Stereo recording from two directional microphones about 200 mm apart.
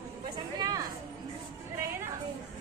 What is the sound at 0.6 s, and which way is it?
Speech, 20° right (ahead or behind).